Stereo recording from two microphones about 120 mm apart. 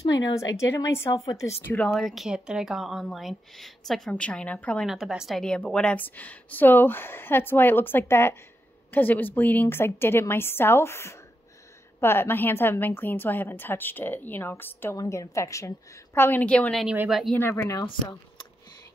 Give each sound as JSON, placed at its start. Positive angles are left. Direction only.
{"t": 0.0, "sound": "a woman's voice", "side_deg": 25}
{"t": 1.9, "sound": "a woman's voice", "side_deg": 0}
{"t": 4.8, "sound": "a woman's voice", "side_deg": -5}
{"t": 16.8, "sound": "a woman's voice", "side_deg": -15}
{"t": 17.4, "sound": "a woman's voice", "side_deg": 20}